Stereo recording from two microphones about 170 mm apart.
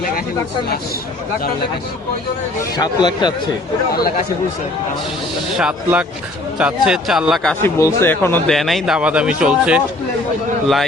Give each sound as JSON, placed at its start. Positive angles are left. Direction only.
{"t": 2.7, "sound": "speech", "side_deg": 25}
{"t": 5.5, "sound": "speech", "side_deg": -5}
{"t": 7.6, "sound": "speech", "side_deg": 15}
{"t": 8.5, "sound": "speech", "side_deg": 0}